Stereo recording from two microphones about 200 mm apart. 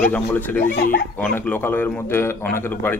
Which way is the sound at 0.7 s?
45° left (ahead or behind).